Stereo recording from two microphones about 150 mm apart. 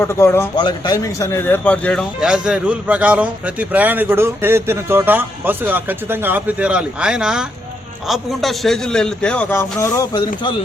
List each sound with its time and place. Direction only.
0.0 s speech: 15° left (ahead or behind)
0.5 s speech: 30° left (ahead or behind); by 2.0 s 5° left (ahead or behind)
2.2 s a man's voice: 5° right (ahead or behind); by 10.5 s 25° left (ahead or behind)